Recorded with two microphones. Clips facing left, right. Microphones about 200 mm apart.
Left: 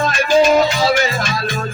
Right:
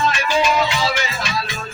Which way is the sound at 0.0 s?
45° left (ahead or behind).